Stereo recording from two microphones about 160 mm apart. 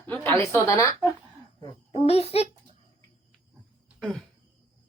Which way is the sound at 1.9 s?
40° left (ahead or behind).